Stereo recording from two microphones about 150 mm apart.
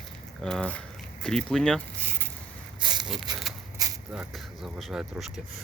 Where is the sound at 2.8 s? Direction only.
30° right (ahead or behind).